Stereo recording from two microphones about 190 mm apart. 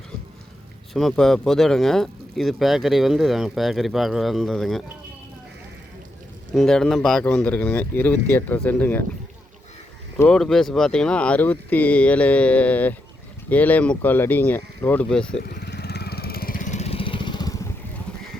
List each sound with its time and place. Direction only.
0.9 s speech: centre (ahead or behind)
6.5 s speech: centre (ahead or behind)
10.2 s speech: 5° left (ahead or behind)
15.4 s vehicle: 55° left (ahead or behind); by 17.7 s 20° left (ahead or behind)